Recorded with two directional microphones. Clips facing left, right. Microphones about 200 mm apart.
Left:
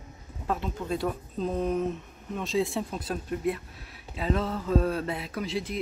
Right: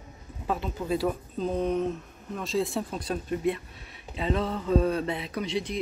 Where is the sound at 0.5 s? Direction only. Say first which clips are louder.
Right 2 dB; centre (ahead or behind).